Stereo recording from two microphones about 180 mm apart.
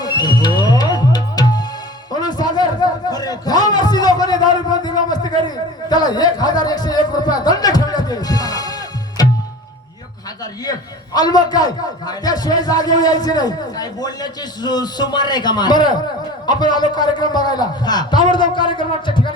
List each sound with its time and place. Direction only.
0.0 s music: 25° left (ahead or behind)
2.1 s a sound: 20° left (ahead or behind)
5.9 s speech: 20° left (ahead or behind)
10.6 s a man's voice: 20° left (ahead or behind)